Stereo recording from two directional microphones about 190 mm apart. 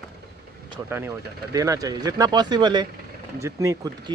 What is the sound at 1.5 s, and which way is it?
Speech, 20° right (ahead or behind).